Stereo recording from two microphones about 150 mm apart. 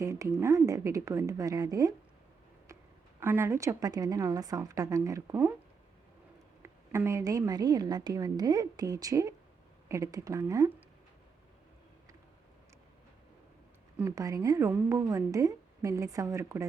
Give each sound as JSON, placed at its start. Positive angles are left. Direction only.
{"t": 0.0, "sound": "a woman's voice", "side_deg": -20}
{"t": 3.2, "sound": "a woman's voice", "side_deg": -15}
{"t": 6.6, "sound": "a woman's voice", "side_deg": -15}
{"t": 14.0, "sound": "a woman's voice", "side_deg": -20}